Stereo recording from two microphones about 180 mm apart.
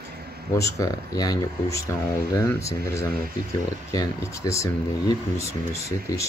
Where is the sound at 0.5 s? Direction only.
15° left (ahead or behind).